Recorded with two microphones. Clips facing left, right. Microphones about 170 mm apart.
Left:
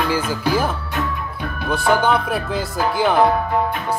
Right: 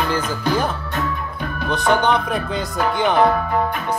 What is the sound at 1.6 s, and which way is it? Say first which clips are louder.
Music: even; 5° left (ahead or behind).